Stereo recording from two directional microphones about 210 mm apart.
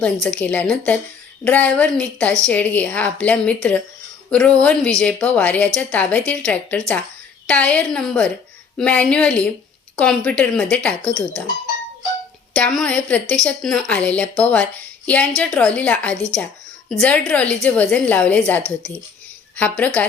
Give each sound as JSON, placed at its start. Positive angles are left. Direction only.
{"t": 0.0, "sound": "a woman's voice", "side_deg": 5}
{"t": 12.5, "sound": "a woman's voice", "side_deg": 5}